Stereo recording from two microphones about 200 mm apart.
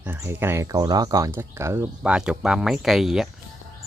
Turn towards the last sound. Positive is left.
turn(degrees=0)  # may be behind; listen again after turning